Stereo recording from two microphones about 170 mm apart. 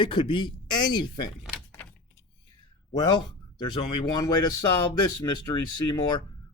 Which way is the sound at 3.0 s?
25° left (ahead or behind).